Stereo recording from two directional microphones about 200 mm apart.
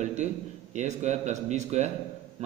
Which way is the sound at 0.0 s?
35° right (ahead or behind).